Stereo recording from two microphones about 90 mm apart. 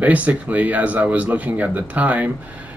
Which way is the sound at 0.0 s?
15° right (ahead or behind).